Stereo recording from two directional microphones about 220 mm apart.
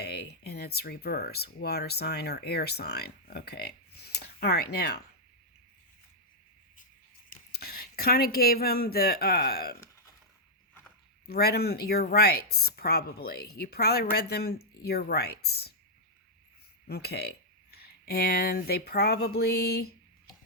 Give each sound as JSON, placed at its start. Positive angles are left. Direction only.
{"t": 0.0, "sound": "speech", "side_deg": 45}
{"t": 7.3, "sound": "speech", "side_deg": 45}
{"t": 11.3, "sound": "speech", "side_deg": 45}
{"t": 16.8, "sound": "speech", "side_deg": 45}